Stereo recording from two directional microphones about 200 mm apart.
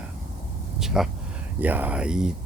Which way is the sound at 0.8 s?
Centre (ahead or behind).